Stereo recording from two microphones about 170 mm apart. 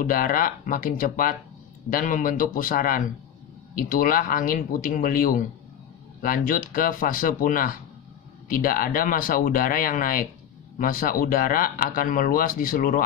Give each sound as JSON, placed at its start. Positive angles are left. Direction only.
{"t": 0.0, "sound": "speech", "side_deg": 55}